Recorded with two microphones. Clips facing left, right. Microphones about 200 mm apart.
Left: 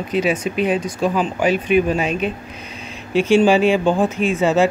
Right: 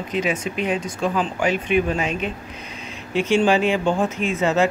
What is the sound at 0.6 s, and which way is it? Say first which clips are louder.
Speech: left 4 dB; 20° left (ahead or behind).